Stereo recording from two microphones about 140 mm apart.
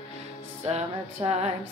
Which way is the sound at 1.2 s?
35° right (ahead or behind).